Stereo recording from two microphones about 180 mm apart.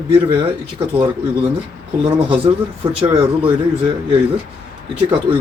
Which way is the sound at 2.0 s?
30° right (ahead or behind).